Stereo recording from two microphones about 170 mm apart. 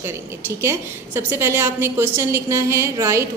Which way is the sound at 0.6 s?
15° right (ahead or behind).